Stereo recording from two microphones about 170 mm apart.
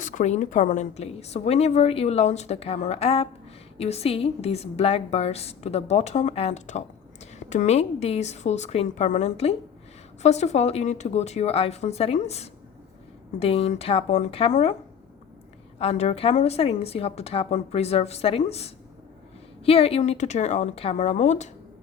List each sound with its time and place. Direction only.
0.0 s a woman's voice: 45° left (ahead or behind)
15.8 s a woman's voice: 40° left (ahead or behind)